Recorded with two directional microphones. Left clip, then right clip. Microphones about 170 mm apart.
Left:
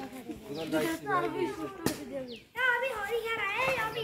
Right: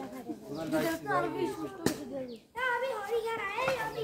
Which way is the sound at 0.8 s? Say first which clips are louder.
Left 1 dB; 25° right (ahead or behind).